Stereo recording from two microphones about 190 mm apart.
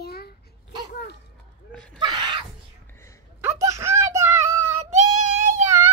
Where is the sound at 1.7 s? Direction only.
5° left (ahead or behind).